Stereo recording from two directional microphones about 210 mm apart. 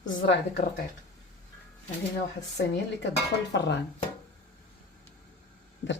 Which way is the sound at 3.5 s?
55° left (ahead or behind).